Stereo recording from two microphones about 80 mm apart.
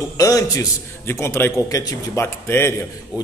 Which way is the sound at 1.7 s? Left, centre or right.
Left.